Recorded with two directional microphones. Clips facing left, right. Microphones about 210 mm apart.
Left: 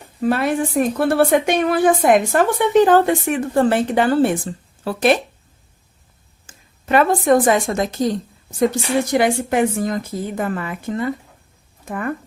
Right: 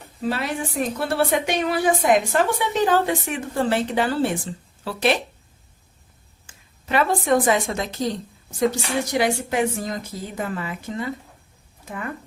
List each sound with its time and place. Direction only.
0.2 s a woman's voice: 55° left (ahead or behind)
6.4 s a woman's voice: 45° left (ahead or behind)